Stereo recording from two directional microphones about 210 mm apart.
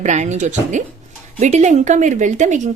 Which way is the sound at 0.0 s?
35° right (ahead or behind).